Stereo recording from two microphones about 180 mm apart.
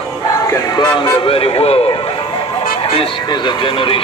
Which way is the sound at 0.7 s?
25° left (ahead or behind).